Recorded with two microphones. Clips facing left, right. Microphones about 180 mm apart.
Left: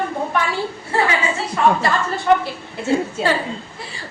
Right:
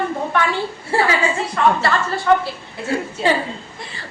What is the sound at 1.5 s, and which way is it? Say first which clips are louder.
Speech: left 2 dB; 15° left (ahead or behind).